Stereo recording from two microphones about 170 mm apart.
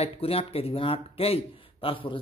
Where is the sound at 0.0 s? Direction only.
35° left (ahead or behind).